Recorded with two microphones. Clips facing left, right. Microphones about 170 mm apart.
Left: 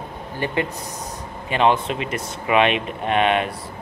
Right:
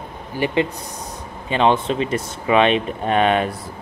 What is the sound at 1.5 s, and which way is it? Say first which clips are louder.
Speech: right 1 dB; 30° right (ahead or behind).